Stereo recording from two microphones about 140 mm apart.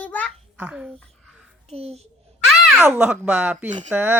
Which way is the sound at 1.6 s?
45° right (ahead or behind).